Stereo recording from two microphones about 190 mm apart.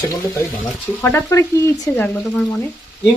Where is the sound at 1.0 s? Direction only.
10° left (ahead or behind).